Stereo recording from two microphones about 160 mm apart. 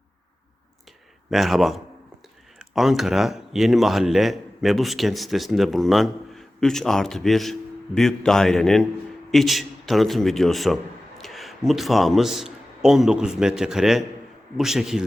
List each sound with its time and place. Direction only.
1.3 s a man's voice: centre (ahead or behind)